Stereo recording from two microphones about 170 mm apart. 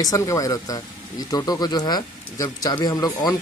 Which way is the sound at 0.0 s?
20° left (ahead or behind).